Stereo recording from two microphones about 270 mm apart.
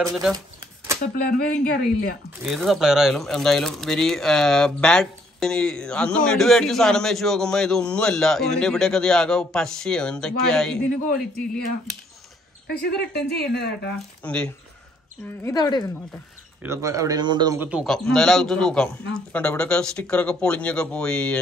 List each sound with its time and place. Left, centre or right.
0.0 s speech: centre
1.1 s speech: left
2.4 s speech: centre
12.6 s speech: left
14.2 s speech: centre
16.6 s speech: centre